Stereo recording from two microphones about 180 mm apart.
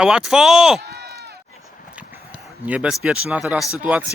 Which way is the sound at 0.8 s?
60° right (ahead or behind).